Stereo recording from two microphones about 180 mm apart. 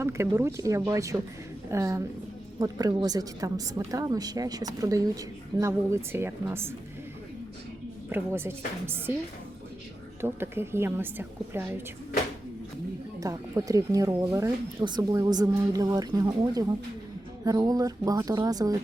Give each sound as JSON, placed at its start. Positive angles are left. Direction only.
{"t": 0.0, "sound": "a woman's voice", "side_deg": -15}
{"t": 8.1, "sound": "a woman's voice", "side_deg": -15}
{"t": 10.2, "sound": "a woman's voice", "side_deg": -10}
{"t": 13.1, "sound": "a woman's voice", "side_deg": -20}